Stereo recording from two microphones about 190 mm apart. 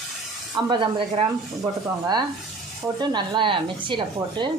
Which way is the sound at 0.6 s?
25° right (ahead or behind).